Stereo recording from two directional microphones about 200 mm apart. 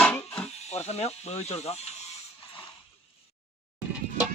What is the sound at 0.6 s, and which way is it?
Speech, 35° left (ahead or behind).